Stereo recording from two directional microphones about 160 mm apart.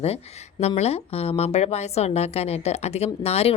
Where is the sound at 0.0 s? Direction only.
40° left (ahead or behind).